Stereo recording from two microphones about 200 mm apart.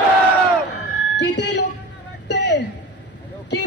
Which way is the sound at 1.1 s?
60° left (ahead or behind).